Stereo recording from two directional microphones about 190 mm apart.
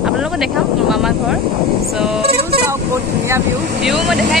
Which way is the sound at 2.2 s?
35° right (ahead or behind).